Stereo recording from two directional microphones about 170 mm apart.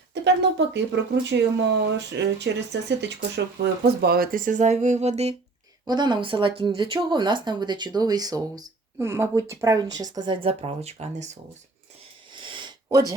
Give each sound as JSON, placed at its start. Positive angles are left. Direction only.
{"t": 0.1, "sound": "speech", "side_deg": -90}
{"t": 5.8, "sound": "speech", "side_deg": -25}
{"t": 12.3, "sound": "a sound", "side_deg": -30}